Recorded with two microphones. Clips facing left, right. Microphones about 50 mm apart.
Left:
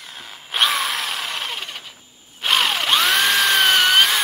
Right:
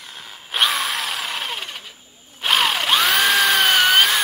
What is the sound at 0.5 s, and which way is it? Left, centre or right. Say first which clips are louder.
Drill: even; centre.